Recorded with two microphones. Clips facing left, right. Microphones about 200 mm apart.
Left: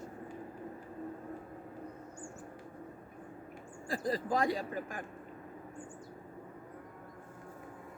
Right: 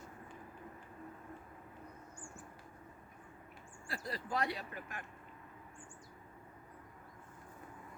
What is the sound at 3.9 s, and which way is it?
Speech, 45° left (ahead or behind).